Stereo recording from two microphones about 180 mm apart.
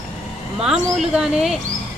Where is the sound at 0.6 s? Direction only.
5° right (ahead or behind).